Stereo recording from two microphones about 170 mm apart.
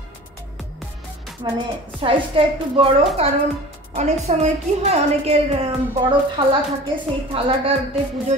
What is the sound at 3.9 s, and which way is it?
A woman's voice, 40° right (ahead or behind).